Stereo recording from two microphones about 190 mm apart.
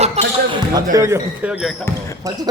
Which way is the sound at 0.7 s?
20° right (ahead or behind).